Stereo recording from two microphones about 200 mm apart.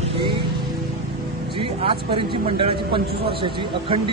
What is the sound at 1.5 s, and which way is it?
Speech, 25° right (ahead or behind).